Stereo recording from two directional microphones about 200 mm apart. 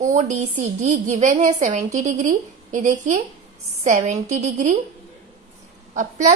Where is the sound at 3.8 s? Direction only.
35° right (ahead or behind).